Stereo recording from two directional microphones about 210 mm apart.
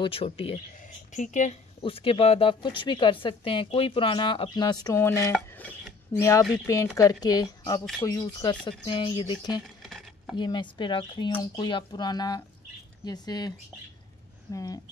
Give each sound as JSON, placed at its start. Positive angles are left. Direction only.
{"t": 0.0, "sound": "speech", "side_deg": 25}
{"t": 5.5, "sound": "a sound", "side_deg": 10}
{"t": 6.5, "sound": "speech", "side_deg": 15}
{"t": 9.6, "sound": "a sound", "side_deg": 0}
{"t": 10.3, "sound": "speech", "side_deg": 20}
{"t": 14.5, "sound": "speech", "side_deg": 15}